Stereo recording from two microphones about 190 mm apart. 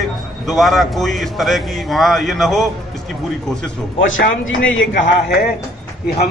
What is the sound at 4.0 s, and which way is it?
Speech, 90° left.